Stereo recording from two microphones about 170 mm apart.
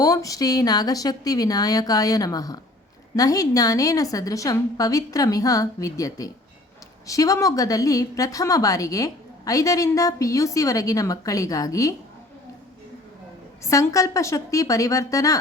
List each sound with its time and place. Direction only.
0.0 s a woman's voice: 20° left (ahead or behind)
13.7 s a woman's voice: 20° left (ahead or behind)